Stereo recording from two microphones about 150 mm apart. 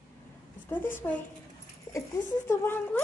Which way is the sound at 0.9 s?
10° left (ahead or behind).